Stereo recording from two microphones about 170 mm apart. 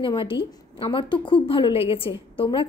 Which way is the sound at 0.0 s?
30° left (ahead or behind).